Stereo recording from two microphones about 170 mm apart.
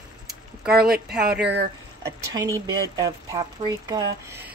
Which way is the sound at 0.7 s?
65° right (ahead or behind).